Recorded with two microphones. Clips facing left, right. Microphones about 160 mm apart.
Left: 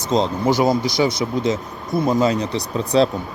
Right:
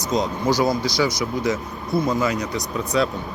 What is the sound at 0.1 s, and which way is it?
Speech, 25° left (ahead or behind).